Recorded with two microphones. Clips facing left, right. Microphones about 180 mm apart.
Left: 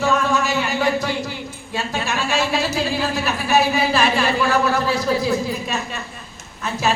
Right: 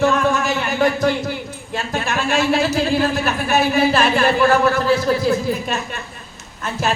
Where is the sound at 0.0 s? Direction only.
50° right (ahead or behind).